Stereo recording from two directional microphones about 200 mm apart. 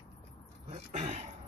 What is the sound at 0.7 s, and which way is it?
Speech, 35° right (ahead or behind).